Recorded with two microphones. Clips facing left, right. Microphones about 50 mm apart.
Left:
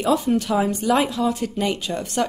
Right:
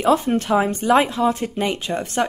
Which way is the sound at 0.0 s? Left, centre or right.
Right.